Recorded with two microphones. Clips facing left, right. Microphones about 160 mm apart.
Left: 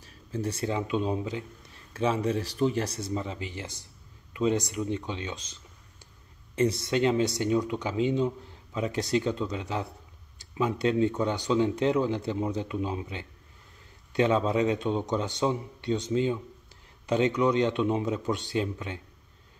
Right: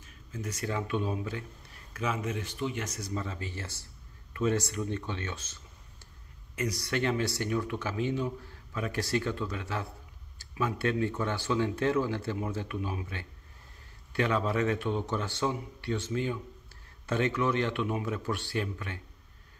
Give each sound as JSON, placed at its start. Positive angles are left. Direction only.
{"t": 0.0, "sound": "a man's voice", "side_deg": 30}
{"t": 2.0, "sound": "speech", "side_deg": 30}
{"t": 3.2, "sound": "speech", "side_deg": 15}
{"t": 6.5, "sound": "speech", "side_deg": 25}